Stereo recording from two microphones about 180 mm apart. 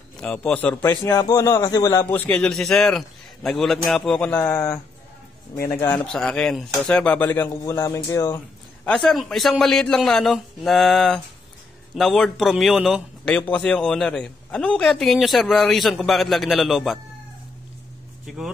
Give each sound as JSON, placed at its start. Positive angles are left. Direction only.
{"t": 0.2, "sound": "a man's voice", "side_deg": 5}
{"t": 6.1, "sound": "a man's voice", "side_deg": 5}
{"t": 8.8, "sound": "a man's voice", "side_deg": 5}